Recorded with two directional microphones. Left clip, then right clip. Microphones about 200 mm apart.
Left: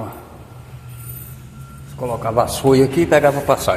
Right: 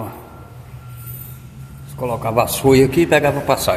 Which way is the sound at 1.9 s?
20° right (ahead or behind).